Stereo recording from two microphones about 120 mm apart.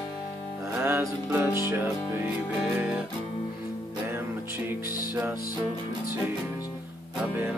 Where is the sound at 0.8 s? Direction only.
20° right (ahead or behind).